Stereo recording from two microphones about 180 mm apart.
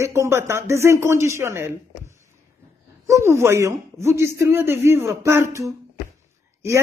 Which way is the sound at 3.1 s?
15° right (ahead or behind).